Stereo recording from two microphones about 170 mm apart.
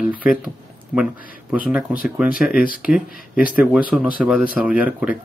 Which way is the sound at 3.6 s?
10° right (ahead or behind).